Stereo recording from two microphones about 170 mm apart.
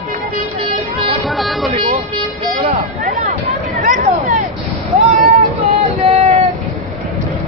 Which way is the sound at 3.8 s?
50° right (ahead or behind).